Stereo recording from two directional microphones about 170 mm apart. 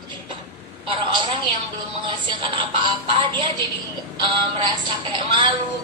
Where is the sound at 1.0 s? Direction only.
25° right (ahead or behind).